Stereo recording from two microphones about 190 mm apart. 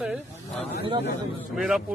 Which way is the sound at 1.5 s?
Centre (ahead or behind).